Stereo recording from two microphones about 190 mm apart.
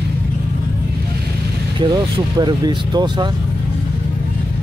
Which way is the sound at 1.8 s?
20° right (ahead or behind).